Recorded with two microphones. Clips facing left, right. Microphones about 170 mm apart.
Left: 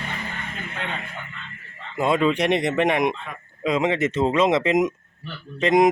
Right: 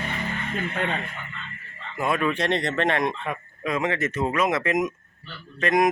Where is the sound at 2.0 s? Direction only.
20° left (ahead or behind).